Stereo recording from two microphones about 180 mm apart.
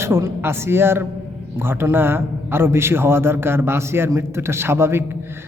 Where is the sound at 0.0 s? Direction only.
15° right (ahead or behind).